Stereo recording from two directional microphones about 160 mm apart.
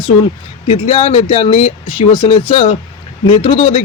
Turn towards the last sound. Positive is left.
turn(degrees=35)  # may be behind; listen again after turning